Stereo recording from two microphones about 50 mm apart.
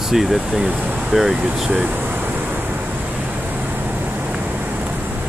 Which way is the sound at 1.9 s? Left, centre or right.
Right.